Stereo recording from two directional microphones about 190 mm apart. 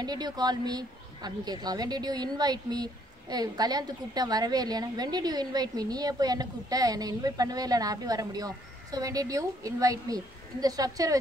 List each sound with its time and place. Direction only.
0.0 s a woman's voice: 20° right (ahead or behind)